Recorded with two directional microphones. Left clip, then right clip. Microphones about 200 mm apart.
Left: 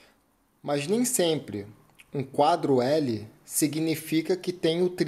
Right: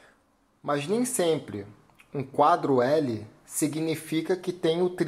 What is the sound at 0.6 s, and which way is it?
Speech, 25° left (ahead or behind).